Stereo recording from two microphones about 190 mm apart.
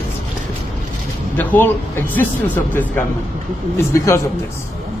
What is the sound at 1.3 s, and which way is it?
Speech, 10° left (ahead or behind).